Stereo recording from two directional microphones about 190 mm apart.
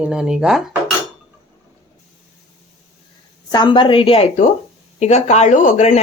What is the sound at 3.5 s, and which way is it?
A woman's voice, 25° left (ahead or behind).